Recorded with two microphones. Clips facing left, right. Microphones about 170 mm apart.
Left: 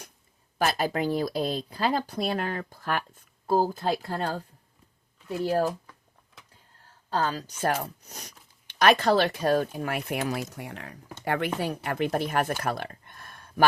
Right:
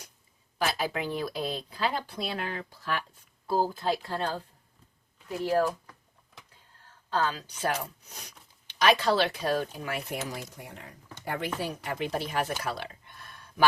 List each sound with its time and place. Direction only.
0.6 s speech: 45° left (ahead or behind)
7.1 s speech: 40° left (ahead or behind); by 10.4 s 65° left (ahead or behind)
10.5 s speech: 80° left
11.3 s speech: 60° left (ahead or behind)